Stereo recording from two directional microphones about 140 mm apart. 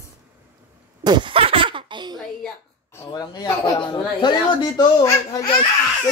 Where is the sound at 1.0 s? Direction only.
35° right (ahead or behind).